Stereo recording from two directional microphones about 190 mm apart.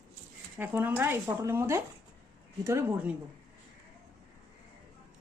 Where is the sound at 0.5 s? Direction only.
10° right (ahead or behind).